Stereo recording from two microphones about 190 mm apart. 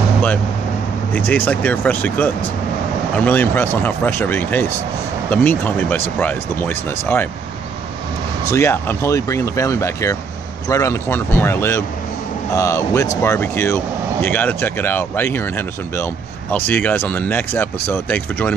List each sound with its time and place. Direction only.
1.1 s speech: 10° left (ahead or behind)
8.5 s speech: 15° left (ahead or behind)